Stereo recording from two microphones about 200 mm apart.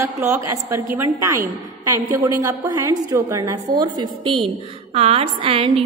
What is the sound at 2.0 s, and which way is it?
A woman's voice, 15° right (ahead or behind).